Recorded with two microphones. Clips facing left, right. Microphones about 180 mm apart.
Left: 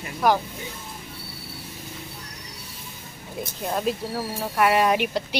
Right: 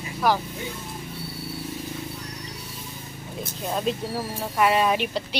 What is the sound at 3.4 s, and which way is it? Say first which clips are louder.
Speech: left 1 dB; 5° left (ahead or behind).